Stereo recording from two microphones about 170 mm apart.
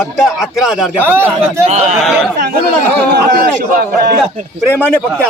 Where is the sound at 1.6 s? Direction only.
40° right (ahead or behind).